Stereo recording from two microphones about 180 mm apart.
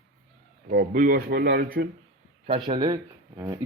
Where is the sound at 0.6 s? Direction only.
55° right (ahead or behind).